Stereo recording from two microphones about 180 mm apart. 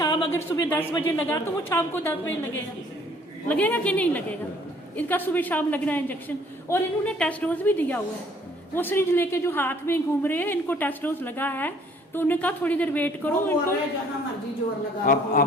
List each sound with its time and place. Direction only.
0.0 s a woman's voice: 20° left (ahead or behind)
15.0 s a man's voice: 50° left (ahead or behind)